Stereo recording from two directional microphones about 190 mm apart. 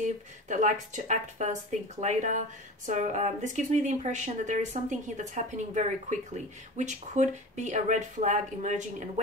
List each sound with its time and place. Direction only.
0.0 s speech: 40° right (ahead or behind)